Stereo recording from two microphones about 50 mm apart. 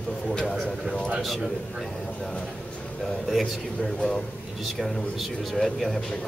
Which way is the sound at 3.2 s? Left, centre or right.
Centre.